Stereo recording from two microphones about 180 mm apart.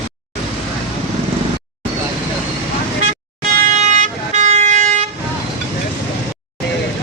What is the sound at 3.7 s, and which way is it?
Vehicle, 40° right (ahead or behind).